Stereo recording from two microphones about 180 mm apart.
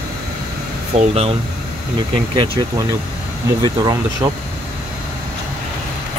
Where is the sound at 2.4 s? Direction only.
30° right (ahead or behind).